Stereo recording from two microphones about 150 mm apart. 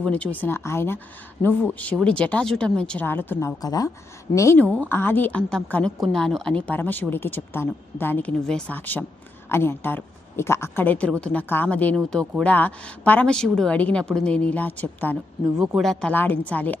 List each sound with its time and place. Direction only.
0.0 s a woman's voice: 10° left (ahead or behind)
15.6 s speech: centre (ahead or behind)